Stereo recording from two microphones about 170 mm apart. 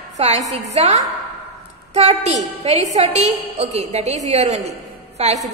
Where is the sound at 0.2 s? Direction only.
35° right (ahead or behind).